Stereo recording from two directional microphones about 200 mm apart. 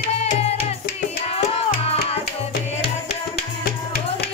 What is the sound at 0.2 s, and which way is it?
Music, 30° left (ahead or behind).